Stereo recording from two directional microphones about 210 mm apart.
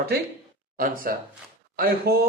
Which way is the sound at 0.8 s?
40° right (ahead or behind).